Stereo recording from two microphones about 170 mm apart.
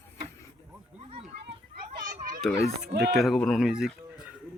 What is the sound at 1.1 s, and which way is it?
Children playing, 35° right (ahead or behind).